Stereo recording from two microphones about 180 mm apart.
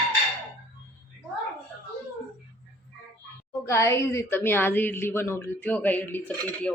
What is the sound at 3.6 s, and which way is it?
A woman's voice, 15° left (ahead or behind).